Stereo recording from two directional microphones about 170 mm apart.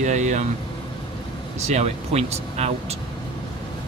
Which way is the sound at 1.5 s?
40° right (ahead or behind).